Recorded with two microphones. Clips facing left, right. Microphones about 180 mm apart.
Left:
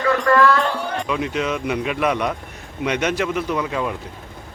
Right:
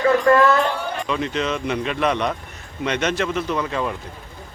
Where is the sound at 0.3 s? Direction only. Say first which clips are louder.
Even; 25° right (ahead or behind).